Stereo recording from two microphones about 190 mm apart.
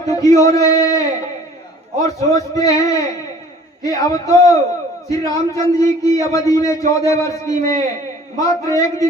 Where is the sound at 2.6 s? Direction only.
20° left (ahead or behind).